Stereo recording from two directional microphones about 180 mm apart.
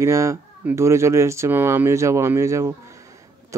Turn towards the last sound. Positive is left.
turn(degrees=-15)  # may be behind; listen again after turning